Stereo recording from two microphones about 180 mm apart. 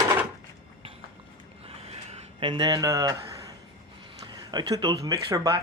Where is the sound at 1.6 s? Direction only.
35° right (ahead or behind); by 3.1 s 20° right (ahead or behind).